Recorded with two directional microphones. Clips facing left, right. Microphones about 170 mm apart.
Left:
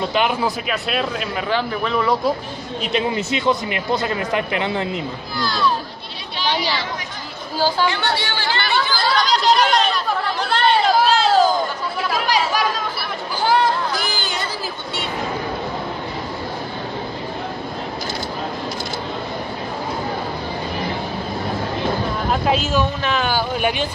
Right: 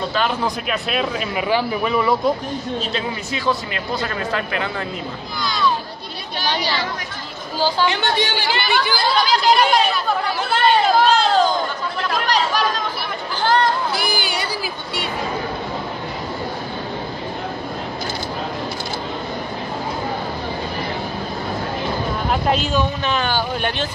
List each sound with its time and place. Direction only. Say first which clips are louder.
0.1 s speech: left 2 dB; 15° left (ahead or behind)
0.7 s speech: even; centre (ahead or behind)
2.8 s speech: left 4 dB; 20° left (ahead or behind)
5.4 s speech: left 1 dB; centre (ahead or behind)
7.8 s speech: right 1 dB; 20° right (ahead or behind); by 11.5 s 5° left (ahead or behind)
12.0 s chatter: even; 5° left (ahead or behind)
13.9 s a sound: right 2 dB; 10° right (ahead or behind)
22.3 s speech: even; centre (ahead or behind)